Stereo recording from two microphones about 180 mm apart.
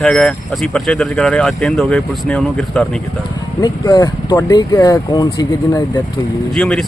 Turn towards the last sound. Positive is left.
turn(degrees=0)  # may be behind; listen again after turning